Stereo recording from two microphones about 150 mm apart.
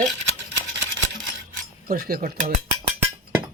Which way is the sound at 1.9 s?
80° right.